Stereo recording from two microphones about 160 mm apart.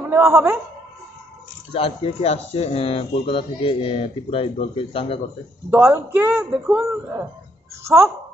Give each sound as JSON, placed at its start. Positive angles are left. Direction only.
{"t": 0.1, "sound": "speech", "side_deg": -15}
{"t": 1.7, "sound": "speech", "side_deg": 35}
{"t": 5.7, "sound": "speech", "side_deg": -15}